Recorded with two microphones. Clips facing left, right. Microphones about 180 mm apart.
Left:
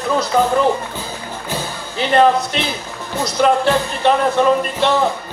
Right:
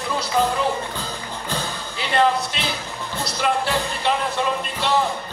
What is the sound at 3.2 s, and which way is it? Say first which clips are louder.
Music: left 8 dB; 50° left (ahead or behind).